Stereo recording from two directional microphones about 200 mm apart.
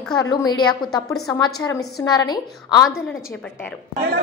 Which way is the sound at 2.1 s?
20° left (ahead or behind).